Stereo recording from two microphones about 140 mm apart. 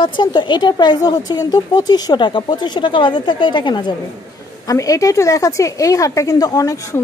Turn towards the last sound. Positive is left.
turn(degrees=25)  # may be behind; listen again after turning